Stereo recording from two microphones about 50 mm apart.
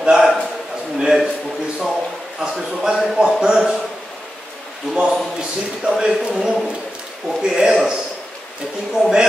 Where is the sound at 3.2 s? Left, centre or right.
Centre.